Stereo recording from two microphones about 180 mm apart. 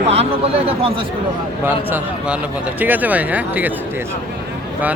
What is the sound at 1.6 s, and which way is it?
Speech, 10° right (ahead or behind).